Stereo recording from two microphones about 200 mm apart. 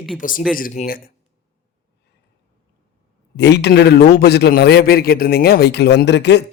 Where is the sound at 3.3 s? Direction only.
60° left (ahead or behind).